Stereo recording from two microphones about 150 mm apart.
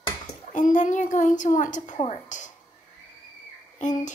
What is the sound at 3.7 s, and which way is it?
Speech, 55° left (ahead or behind).